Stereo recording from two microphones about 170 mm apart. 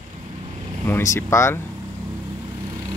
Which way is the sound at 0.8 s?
15° left (ahead or behind).